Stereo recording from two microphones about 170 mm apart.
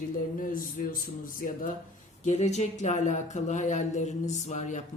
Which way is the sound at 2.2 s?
40° left (ahead or behind).